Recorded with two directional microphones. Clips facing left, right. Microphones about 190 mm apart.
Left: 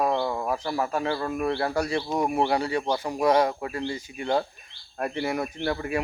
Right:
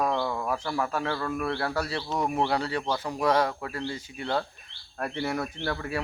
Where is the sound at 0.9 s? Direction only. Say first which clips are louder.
Left 3 dB; 20° left (ahead or behind).